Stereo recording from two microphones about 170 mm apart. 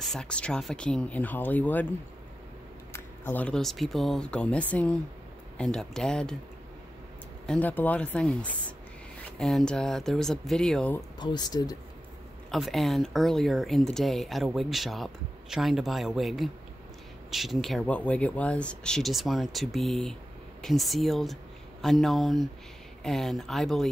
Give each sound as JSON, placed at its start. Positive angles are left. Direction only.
{"t": 0.1, "sound": "speech", "side_deg": 5}
{"t": 2.9, "sound": "speech", "side_deg": 10}
{"t": 7.4, "sound": "speech", "side_deg": 10}
{"t": 11.1, "sound": "speech", "side_deg": 25}
{"t": 12.4, "sound": "speech", "side_deg": 0}